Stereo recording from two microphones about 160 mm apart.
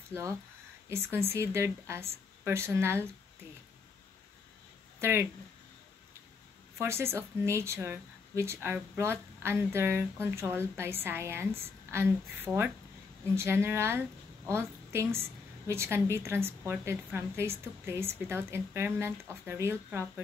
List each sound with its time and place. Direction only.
0.8 s a woman's voice: 15° right (ahead or behind)
6.8 s a woman's voice: 15° right (ahead or behind)